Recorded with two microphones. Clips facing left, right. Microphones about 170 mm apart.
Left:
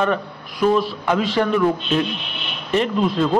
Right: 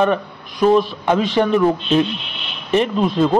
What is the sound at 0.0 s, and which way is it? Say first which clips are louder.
A man's voice: right 3 dB; 20° right (ahead or behind).